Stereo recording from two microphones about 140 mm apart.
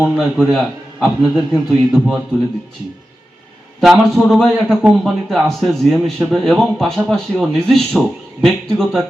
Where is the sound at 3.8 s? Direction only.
Centre (ahead or behind).